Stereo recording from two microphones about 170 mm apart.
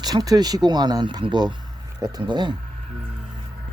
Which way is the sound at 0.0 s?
20° right (ahead or behind).